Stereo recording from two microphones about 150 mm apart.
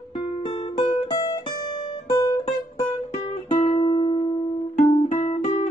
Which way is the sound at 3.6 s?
45° left (ahead or behind).